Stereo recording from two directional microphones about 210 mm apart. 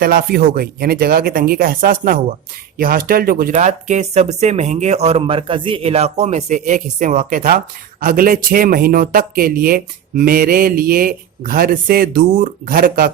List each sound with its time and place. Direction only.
0.0 s speech: 45° right (ahead or behind)